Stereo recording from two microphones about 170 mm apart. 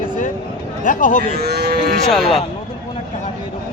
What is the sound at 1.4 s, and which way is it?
Cattle, 70° right (ahead or behind).